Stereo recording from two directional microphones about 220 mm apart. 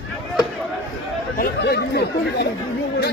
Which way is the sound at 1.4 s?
50° left (ahead or behind).